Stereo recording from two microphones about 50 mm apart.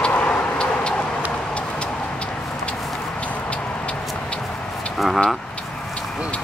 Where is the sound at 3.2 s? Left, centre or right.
Left.